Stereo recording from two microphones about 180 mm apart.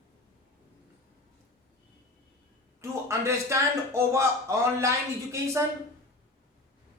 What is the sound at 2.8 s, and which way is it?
Speech, 15° right (ahead or behind).